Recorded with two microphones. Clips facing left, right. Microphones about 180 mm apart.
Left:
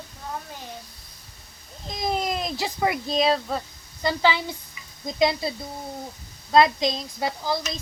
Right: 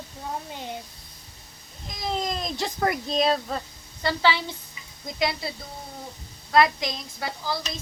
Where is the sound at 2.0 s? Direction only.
10° left (ahead or behind).